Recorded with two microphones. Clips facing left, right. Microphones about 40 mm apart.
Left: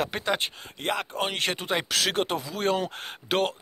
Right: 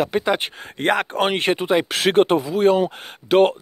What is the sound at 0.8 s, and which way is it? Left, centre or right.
Speech, right.